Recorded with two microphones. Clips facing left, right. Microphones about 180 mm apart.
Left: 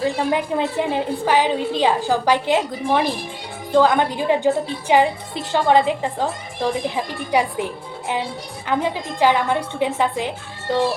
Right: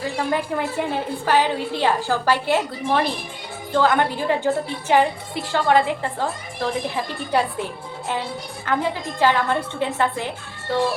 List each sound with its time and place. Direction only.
0.0 s a woman's voice: 20° left (ahead or behind)